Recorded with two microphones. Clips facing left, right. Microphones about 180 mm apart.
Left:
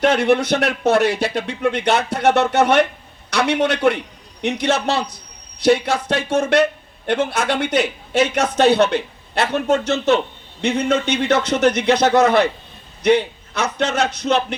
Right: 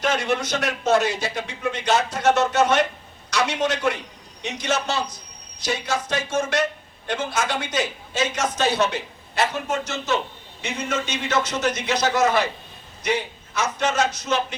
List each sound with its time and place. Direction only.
0.0 s speech: 60° left (ahead or behind)